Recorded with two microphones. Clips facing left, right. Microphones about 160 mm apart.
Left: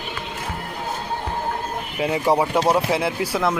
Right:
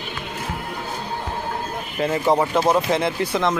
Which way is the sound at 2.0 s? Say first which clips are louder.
Even; 10° left (ahead or behind).